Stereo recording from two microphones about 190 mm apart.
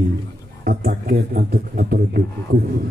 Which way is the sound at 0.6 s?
50° right (ahead or behind).